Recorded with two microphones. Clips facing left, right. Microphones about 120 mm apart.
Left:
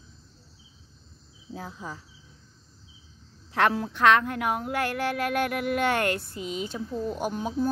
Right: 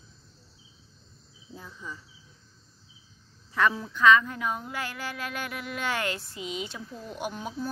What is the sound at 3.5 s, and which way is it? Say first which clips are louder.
A woman's voice: left 2 dB; 75° left (ahead or behind).